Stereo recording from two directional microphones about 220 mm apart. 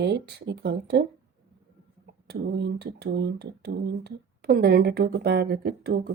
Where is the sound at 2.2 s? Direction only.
45° right (ahead or behind).